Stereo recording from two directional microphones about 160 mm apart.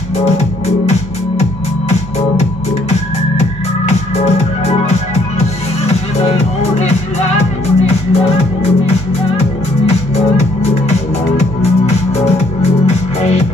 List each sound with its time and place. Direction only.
1.4 s music: 45° left (ahead or behind)
4.2 s music: 45° left (ahead or behind)
9.8 s music: 40° left (ahead or behind)